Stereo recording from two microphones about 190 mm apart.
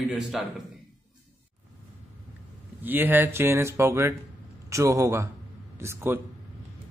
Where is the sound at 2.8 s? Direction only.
10° right (ahead or behind).